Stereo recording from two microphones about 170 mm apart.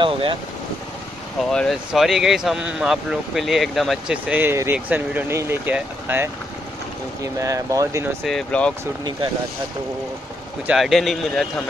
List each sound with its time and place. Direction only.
0.0 s speech: 30° right (ahead or behind)
1.5 s speech: centre (ahead or behind)
7.3 s speech: 20° right (ahead or behind)
8.2 s speech: 5° left (ahead or behind)
10.7 s speech: centre (ahead or behind)